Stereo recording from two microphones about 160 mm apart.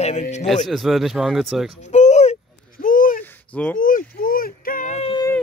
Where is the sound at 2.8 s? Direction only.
60° left (ahead or behind).